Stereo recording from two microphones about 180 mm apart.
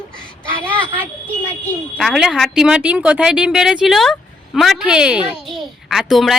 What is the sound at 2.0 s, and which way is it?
Speech, centre (ahead or behind).